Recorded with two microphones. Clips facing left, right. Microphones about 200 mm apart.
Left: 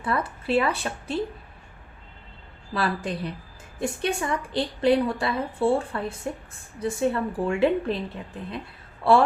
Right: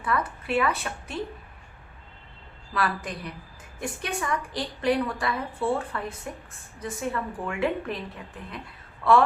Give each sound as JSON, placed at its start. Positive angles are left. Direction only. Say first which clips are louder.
{"t": 0.0, "sound": "speech", "louder": "left 1 dB", "side_deg": 30}
{"t": 2.7, "sound": "a woman's voice", "louder": "left 2 dB", "side_deg": 30}